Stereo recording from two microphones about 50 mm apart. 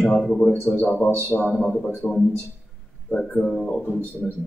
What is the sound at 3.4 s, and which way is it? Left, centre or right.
Speech, centre.